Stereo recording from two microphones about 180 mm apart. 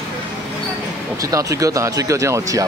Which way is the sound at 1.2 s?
20° right (ahead or behind).